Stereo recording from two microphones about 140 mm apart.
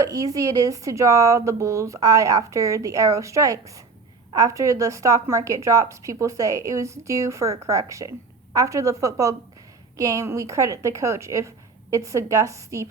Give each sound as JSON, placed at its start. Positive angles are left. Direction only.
{"t": 0.0, "sound": "speech", "side_deg": -25}